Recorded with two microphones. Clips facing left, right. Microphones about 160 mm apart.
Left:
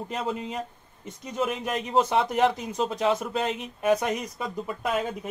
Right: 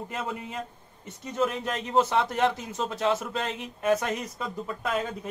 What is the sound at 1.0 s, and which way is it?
Speech, 15° left (ahead or behind).